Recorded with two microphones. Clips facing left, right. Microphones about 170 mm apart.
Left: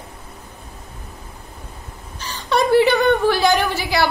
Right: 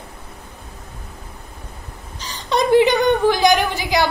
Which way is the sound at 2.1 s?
15° right (ahead or behind).